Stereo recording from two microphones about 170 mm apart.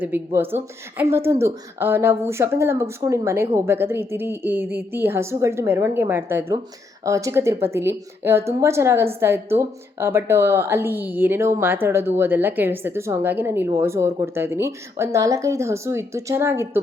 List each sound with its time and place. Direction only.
0.0 s a woman's voice: 10° right (ahead or behind)